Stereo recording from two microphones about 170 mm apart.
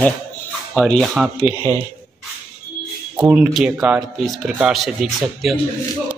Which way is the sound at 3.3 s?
5° right (ahead or behind).